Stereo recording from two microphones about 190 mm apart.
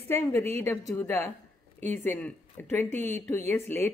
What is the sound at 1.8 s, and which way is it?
Speech, 35° right (ahead or behind).